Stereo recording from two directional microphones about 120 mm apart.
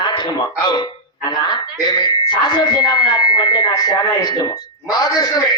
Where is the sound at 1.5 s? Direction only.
40° left (ahead or behind).